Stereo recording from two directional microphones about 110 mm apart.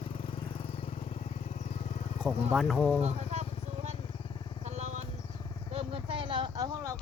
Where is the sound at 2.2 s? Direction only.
5° right (ahead or behind).